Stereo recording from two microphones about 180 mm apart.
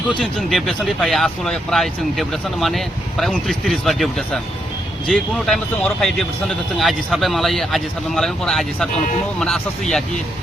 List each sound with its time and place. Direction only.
0.2 s speech: centre (ahead or behind)